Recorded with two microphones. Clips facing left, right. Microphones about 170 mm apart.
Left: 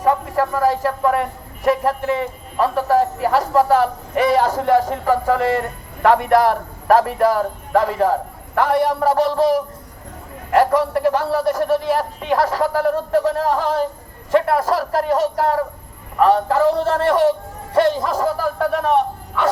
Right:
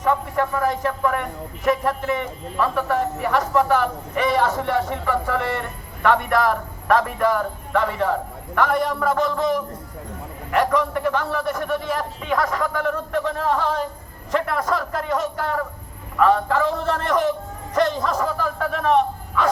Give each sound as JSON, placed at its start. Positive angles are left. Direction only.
{"t": 0.0, "sound": "speech", "side_deg": 35}